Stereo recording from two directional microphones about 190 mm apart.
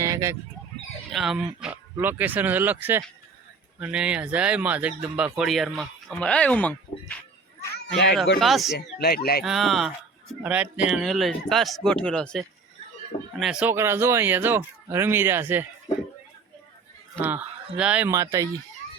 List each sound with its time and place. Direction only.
0.0 s chicken: 15° right (ahead or behind)
1.1 s speech: centre (ahead or behind)
8.4 s speech: centre (ahead or behind)
8.7 s speech: 55° left (ahead or behind)
9.4 s speech: centre (ahead or behind)
17.2 s speech: 10° right (ahead or behind)